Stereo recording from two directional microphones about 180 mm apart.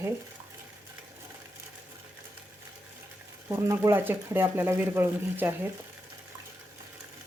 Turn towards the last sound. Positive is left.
turn(degrees=-10)  # may be behind; listen again after turning